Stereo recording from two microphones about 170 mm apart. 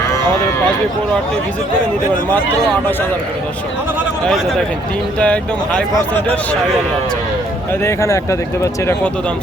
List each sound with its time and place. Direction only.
5.2 s speech: 5° left (ahead or behind)
7.7 s speech: 15° left (ahead or behind)